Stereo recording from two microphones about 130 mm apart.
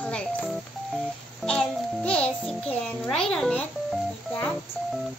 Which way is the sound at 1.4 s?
10° left (ahead or behind).